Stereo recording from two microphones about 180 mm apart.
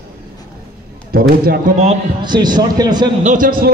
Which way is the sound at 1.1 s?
55° right (ahead or behind).